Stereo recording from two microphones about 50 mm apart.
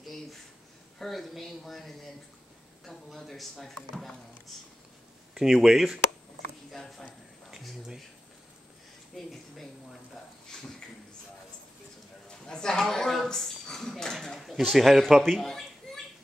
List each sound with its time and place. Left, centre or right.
0.0 s a sound: centre
0.9 s a man's voice: centre
5.3 s speech: centre
6.7 s speech: centre
7.5 s speech: centre
10.5 s a man's voice: centre
12.3 s a man's voice: centre
14.4 s speech: centre